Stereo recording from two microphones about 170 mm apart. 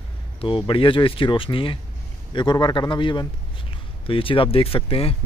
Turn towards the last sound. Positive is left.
turn(degrees=35)  # may be behind; listen again after turning